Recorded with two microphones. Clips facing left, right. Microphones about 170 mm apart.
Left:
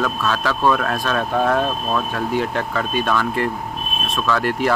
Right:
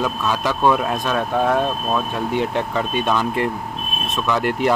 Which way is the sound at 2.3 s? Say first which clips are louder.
Right 1 dB; 25° right (ahead or behind).